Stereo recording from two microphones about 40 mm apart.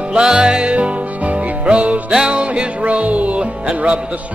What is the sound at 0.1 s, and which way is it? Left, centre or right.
Music, centre.